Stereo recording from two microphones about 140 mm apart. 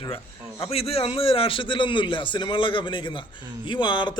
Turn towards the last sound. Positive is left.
turn(degrees=35)  # may be behind; listen again after turning